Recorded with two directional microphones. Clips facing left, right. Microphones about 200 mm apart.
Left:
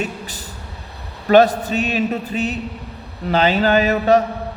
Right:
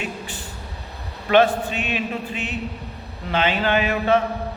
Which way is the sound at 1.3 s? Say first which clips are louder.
Left 4 dB; 40° left (ahead or behind).